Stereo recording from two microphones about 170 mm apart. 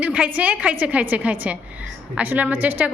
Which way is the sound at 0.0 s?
10° right (ahead or behind).